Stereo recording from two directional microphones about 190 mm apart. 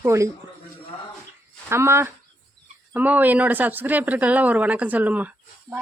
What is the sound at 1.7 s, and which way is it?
Speech, 15° right (ahead or behind).